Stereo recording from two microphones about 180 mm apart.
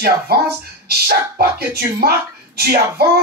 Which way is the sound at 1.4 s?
60° right (ahead or behind).